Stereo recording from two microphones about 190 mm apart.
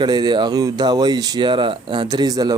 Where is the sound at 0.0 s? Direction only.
20° right (ahead or behind).